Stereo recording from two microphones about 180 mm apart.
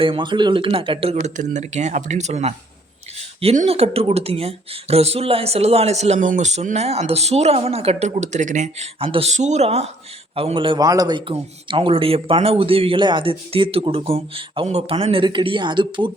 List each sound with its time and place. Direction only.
0.0 s a man's voice: 30° right (ahead or behind)